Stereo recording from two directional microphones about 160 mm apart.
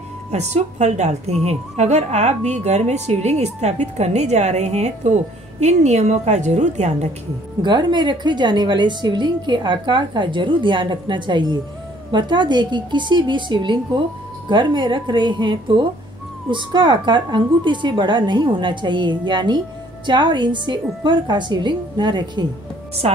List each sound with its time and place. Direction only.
0.3 s a woman's voice: 45° right (ahead or behind)
7.6 s a woman's voice: 30° right (ahead or behind)
23.0 s a woman's voice: 40° right (ahead or behind)